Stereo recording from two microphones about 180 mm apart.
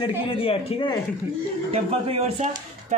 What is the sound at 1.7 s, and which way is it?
Speech, 35° right (ahead or behind).